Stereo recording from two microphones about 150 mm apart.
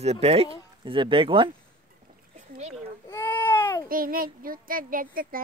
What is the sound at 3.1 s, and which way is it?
Baby cry, 15° left (ahead or behind).